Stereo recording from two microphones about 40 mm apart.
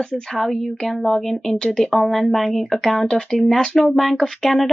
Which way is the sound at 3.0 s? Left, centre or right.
Centre.